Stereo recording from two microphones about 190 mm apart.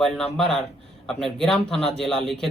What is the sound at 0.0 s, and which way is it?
Speech, centre (ahead or behind).